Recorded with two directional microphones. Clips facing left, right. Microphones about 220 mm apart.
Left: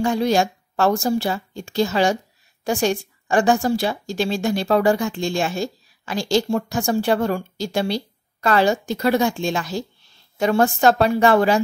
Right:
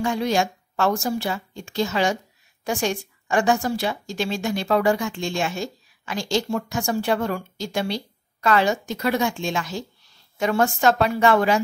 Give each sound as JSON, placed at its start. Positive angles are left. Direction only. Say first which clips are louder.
{"t": 0.0, "sound": "a woman's voice", "louder": "left 3 dB", "side_deg": 35}